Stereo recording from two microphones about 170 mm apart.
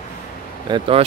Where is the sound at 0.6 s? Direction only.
30° right (ahead or behind).